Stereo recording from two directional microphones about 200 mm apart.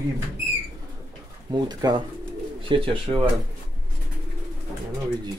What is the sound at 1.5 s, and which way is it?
Speech, 20° right (ahead or behind).